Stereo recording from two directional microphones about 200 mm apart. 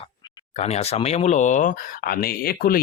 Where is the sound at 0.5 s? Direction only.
30° left (ahead or behind).